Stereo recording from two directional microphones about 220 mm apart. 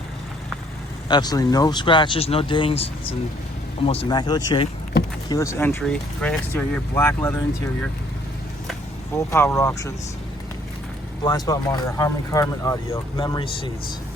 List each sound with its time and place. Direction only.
1.0 s speech: 20° left (ahead or behind)
4.1 s speech: 20° left (ahead or behind)
9.1 s speech: 10° left (ahead or behind)
11.2 s speech: 15° left (ahead or behind)